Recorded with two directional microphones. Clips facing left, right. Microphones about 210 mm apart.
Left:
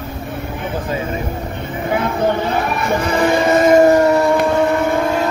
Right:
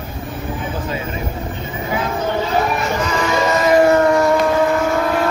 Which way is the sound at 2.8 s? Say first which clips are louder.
Left 4 dB; 55° left (ahead or behind).